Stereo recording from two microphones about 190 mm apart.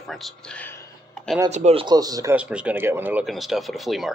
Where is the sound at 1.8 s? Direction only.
20° right (ahead or behind).